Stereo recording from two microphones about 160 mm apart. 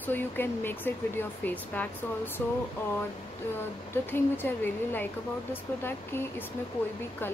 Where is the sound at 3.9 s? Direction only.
15° left (ahead or behind).